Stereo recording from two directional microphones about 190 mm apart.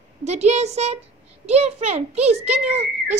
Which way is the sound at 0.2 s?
35° right (ahead or behind).